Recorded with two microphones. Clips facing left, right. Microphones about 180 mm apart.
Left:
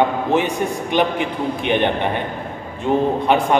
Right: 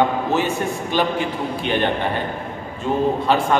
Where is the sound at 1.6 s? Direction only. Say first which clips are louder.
Left 3 dB; 15° left (ahead or behind).